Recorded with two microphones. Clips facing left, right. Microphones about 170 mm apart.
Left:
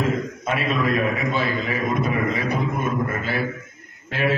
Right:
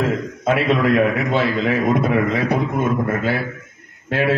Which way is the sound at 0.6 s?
70° right (ahead or behind).